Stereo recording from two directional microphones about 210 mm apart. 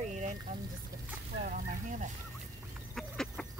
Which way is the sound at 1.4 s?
35° right (ahead or behind).